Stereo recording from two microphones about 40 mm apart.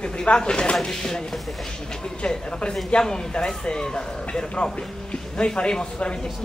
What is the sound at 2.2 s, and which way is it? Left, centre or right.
Speech, left.